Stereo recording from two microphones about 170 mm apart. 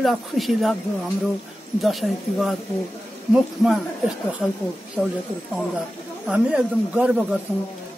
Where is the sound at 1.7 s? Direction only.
Centre (ahead or behind).